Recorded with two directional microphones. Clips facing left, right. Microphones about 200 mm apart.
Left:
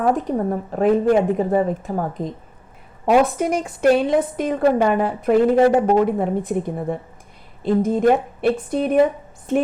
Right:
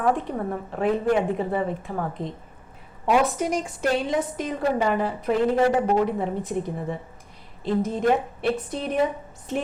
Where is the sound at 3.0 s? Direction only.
60° left (ahead or behind).